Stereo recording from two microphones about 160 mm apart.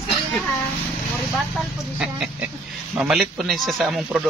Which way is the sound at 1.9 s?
10° right (ahead or behind).